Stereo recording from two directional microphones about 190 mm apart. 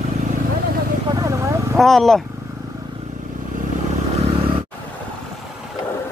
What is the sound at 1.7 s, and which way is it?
Speech, centre (ahead or behind).